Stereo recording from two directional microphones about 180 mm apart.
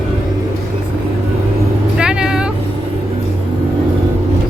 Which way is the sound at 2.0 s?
5° right (ahead or behind).